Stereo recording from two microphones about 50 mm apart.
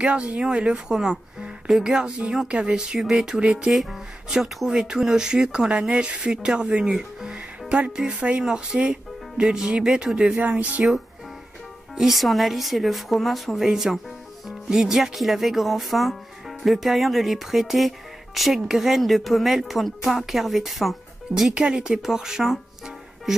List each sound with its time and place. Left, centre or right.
0.0 s speech: right
3.0 s speech: centre
3.3 s speech: centre
3.7 s speech: centre
7.3 s music: right
8.1 s speech: right
10.4 s speech: right
12.1 s speech: centre
21.5 s speech: centre